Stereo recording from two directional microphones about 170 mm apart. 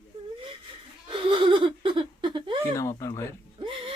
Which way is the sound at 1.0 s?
30° right (ahead or behind).